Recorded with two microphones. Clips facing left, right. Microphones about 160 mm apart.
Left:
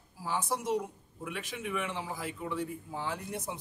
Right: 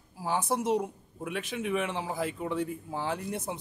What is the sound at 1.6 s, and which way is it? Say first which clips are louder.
Speech: right 5 dB; 70° right (ahead or behind).